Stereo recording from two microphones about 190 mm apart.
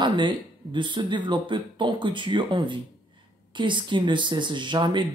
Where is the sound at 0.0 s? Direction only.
25° right (ahead or behind).